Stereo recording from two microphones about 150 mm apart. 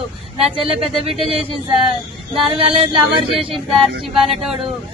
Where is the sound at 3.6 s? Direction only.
Centre (ahead or behind).